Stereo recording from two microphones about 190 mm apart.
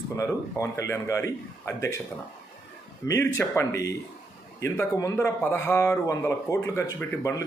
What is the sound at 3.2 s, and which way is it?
Speech, 15° left (ahead or behind).